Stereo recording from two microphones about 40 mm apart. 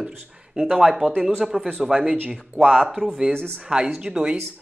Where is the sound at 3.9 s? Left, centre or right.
Right.